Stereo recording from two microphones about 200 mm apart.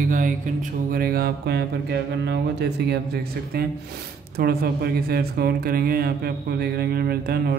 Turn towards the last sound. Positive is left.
turn(degrees=-50)  # may be behind; listen again after turning